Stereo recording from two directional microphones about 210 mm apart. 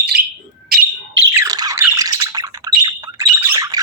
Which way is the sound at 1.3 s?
20° right (ahead or behind).